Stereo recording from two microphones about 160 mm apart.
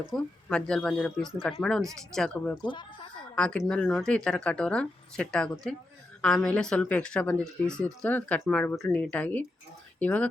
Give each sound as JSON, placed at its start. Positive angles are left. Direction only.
{"t": 0.0, "sound": "speech", "side_deg": 5}
{"t": 2.6, "sound": "speech", "side_deg": 30}
{"t": 3.3, "sound": "speech", "side_deg": 5}